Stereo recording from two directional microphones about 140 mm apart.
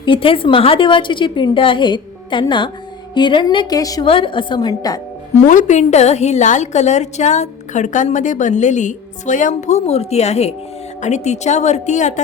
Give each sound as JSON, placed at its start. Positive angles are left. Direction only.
{"t": 0.0, "sound": "a woman's voice", "side_deg": 40}
{"t": 4.0, "sound": "a woman's voice", "side_deg": 40}
{"t": 5.5, "sound": "a woman's voice", "side_deg": 65}